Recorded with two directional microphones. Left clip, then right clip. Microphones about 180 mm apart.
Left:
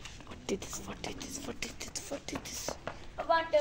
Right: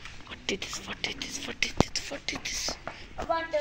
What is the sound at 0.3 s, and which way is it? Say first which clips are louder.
Speech: right 5 dB; 10° left (ahead or behind).